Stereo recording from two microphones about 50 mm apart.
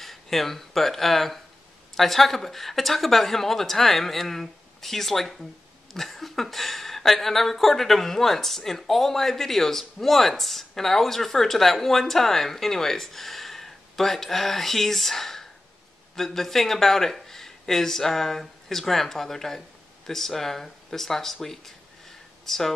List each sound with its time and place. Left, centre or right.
0.0 s a woman's voice: centre